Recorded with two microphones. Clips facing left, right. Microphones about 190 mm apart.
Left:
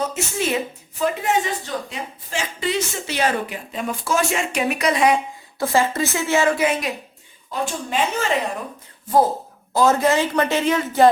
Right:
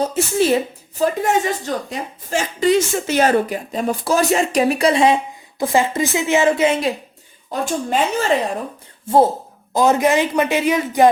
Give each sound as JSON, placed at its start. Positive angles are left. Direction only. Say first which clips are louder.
{"t": 0.0, "sound": "a woman's voice", "louder": "right 6 dB", "side_deg": -35}
{"t": 7.5, "sound": "speech", "louder": "right 4 dB", "side_deg": -45}
{"t": 9.0, "sound": "speech", "louder": "right 3 dB", "side_deg": -25}
{"t": 9.7, "sound": "a man's voice", "louder": "right 2 dB", "side_deg": -15}